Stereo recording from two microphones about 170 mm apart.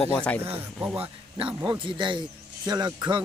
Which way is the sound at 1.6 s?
30° right (ahead or behind).